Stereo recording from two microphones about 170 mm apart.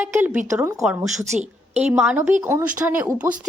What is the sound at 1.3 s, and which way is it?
Speech, 40° right (ahead or behind).